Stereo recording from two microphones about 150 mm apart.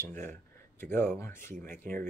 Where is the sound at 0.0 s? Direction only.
15° left (ahead or behind).